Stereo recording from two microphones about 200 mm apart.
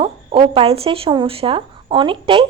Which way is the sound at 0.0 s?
25° right (ahead or behind).